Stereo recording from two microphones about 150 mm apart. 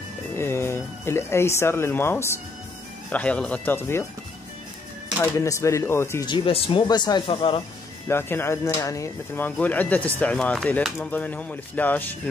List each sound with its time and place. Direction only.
0.4 s speech: 15° left (ahead or behind)
5.2 s speech: 20° left (ahead or behind)
6.2 s speech: 35° left (ahead or behind)
8.1 s speech: 15° left (ahead or behind)